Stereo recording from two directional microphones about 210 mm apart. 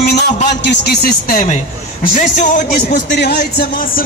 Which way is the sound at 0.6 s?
50° left (ahead or behind).